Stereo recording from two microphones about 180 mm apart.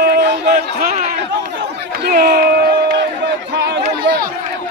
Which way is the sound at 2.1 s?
55° right (ahead or behind).